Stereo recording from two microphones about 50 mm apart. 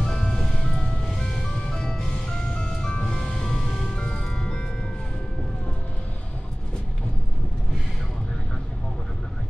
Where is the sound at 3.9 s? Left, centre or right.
Centre.